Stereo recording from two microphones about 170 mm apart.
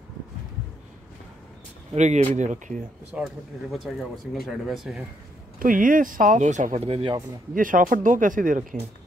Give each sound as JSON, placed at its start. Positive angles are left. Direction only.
{"t": 2.0, "sound": "speech", "side_deg": -45}
{"t": 3.1, "sound": "speech", "side_deg": -5}
{"t": 5.6, "sound": "speech", "side_deg": -50}
{"t": 7.5, "sound": "speech", "side_deg": -55}